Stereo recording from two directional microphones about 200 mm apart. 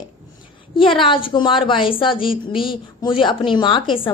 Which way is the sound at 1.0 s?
25° left (ahead or behind).